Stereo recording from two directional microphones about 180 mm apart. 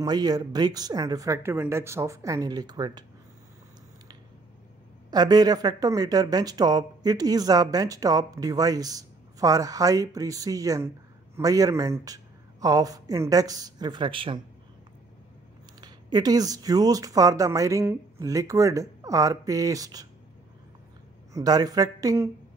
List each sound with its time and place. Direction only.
0.0 s speech: 20° right (ahead or behind)
5.1 s speech: 20° right (ahead or behind)
15.8 s speech: 20° right (ahead or behind)
21.3 s speech: 20° right (ahead or behind)